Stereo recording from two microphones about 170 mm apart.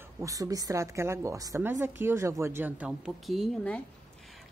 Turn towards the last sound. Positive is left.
turn(degrees=5)  # may be behind; listen again after turning